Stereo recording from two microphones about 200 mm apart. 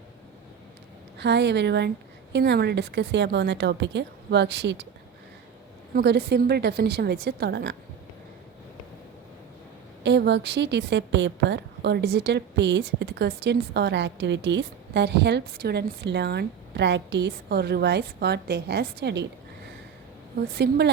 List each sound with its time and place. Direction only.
1.2 s a woman's voice: 60° right (ahead or behind)
5.9 s a woman's voice: 55° right (ahead or behind)
10.0 s a woman's voice: 60° right (ahead or behind)
20.6 s a woman's voice: 55° right (ahead or behind)